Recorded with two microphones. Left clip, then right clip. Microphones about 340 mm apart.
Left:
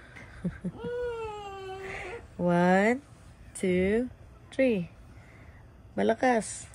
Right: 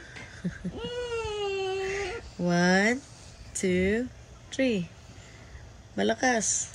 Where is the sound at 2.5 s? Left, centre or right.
Centre.